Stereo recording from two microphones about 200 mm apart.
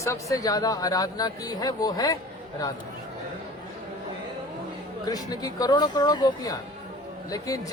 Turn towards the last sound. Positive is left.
turn(degrees=15)  # may be behind; listen again after turning